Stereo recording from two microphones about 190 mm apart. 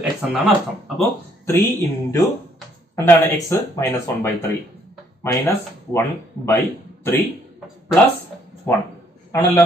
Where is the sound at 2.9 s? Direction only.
15° left (ahead or behind).